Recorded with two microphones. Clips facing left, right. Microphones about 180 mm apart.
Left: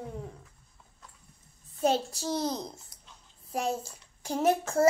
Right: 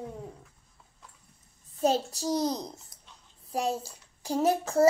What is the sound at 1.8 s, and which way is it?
Speech, 35° right (ahead or behind).